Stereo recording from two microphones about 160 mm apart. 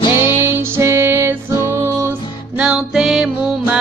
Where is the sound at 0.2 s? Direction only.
15° right (ahead or behind).